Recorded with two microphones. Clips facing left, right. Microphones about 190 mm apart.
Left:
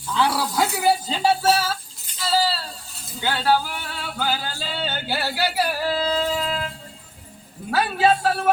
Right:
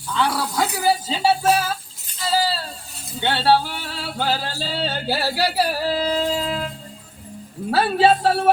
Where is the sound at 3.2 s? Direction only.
30° right (ahead or behind).